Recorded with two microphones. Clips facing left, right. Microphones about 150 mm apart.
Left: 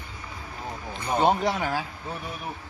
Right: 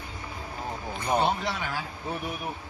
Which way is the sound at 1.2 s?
45° left (ahead or behind).